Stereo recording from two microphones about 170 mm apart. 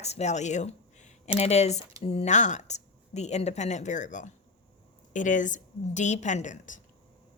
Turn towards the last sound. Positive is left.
turn(degrees=50)  # may be behind; listen again after turning